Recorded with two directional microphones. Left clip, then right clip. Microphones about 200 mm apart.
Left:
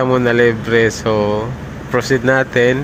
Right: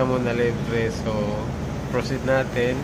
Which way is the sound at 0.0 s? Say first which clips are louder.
Left 9 dB; 45° left (ahead or behind).